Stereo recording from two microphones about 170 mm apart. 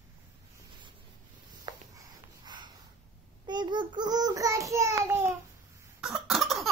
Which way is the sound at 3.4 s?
25° right (ahead or behind).